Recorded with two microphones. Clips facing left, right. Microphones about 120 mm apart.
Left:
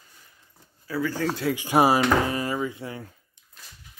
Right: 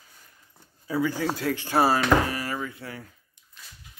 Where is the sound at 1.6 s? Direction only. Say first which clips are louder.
Left 3 dB; 15° left (ahead or behind).